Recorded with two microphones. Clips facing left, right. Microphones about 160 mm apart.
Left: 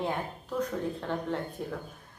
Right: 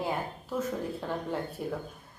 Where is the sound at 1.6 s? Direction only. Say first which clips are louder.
Right 2 dB; 5° right (ahead or behind).